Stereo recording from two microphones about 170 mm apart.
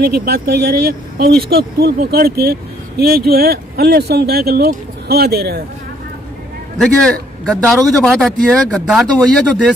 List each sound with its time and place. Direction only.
0.0 s speech: 65° right (ahead or behind)
6.8 s a man's voice: centre (ahead or behind)